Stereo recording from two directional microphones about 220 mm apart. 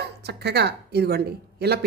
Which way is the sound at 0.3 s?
50° right (ahead or behind).